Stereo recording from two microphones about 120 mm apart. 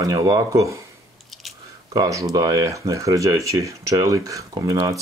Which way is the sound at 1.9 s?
25° right (ahead or behind).